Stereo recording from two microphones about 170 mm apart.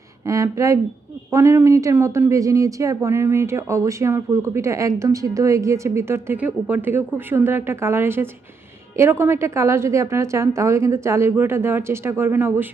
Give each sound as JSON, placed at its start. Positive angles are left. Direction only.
{"t": 0.3, "sound": "speech", "side_deg": -15}